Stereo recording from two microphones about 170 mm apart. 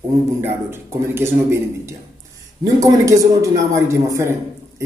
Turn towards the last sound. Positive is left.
turn(degrees=-15)  # may be behind; listen again after turning